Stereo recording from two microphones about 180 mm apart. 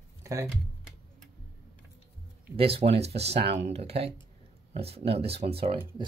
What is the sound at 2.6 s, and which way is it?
Speech, 35° right (ahead or behind).